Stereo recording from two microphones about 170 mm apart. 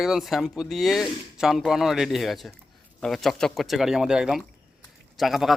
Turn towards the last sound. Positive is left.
turn(degrees=0)  # may be behind; listen again after turning